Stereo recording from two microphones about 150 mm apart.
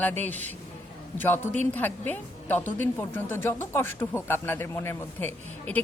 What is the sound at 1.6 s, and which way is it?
Speech, 10° left (ahead or behind).